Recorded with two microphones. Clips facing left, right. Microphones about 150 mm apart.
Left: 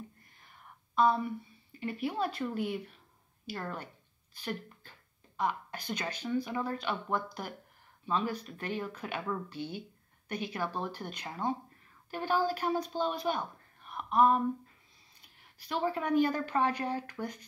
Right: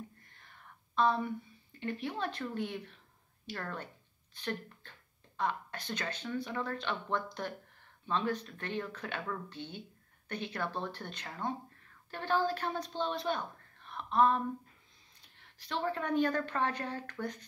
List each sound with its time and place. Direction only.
0.9 s a woman's voice: 10° left (ahead or behind)
13.8 s a sound: 10° left (ahead or behind)
15.2 s a woman's voice: 10° left (ahead or behind)